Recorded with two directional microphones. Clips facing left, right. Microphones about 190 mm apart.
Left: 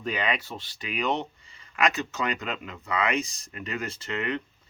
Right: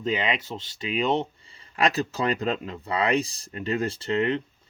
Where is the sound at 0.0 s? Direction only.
25° right (ahead or behind).